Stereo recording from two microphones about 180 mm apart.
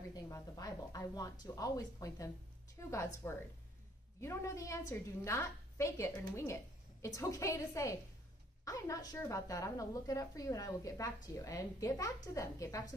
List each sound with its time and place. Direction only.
0.1 s a woman's voice: 20° left (ahead or behind)